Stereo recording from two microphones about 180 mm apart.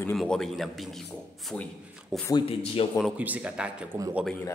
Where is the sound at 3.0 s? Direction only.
5° right (ahead or behind).